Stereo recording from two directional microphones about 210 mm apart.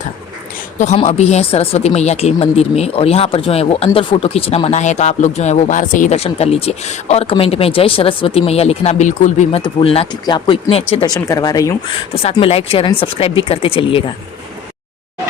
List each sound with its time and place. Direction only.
0.8 s speech: 35° left (ahead or behind)